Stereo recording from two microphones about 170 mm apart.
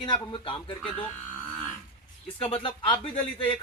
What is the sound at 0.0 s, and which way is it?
Speech, 30° left (ahead or behind).